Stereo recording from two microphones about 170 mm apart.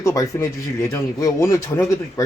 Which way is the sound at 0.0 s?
20° left (ahead or behind).